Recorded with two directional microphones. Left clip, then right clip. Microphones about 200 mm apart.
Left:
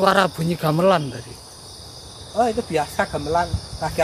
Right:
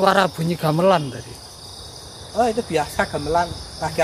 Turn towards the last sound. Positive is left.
turn(degrees=0)  # may be behind; listen again after turning